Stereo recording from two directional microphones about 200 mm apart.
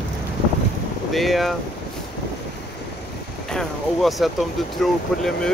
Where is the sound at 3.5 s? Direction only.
Centre (ahead or behind).